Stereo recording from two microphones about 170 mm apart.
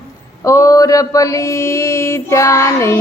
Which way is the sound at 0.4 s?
20° left (ahead or behind).